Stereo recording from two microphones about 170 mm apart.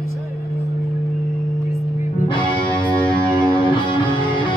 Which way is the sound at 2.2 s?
30° left (ahead or behind).